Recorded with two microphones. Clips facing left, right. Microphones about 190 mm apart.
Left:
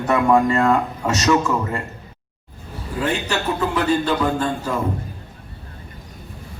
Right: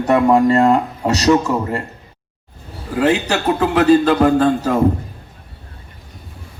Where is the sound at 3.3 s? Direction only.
85° right.